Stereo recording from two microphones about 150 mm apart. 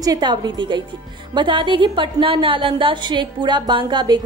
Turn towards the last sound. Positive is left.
turn(degrees=-30)  # may be behind; listen again after turning